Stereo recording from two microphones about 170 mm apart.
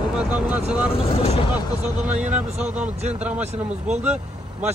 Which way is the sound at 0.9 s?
35° left (ahead or behind).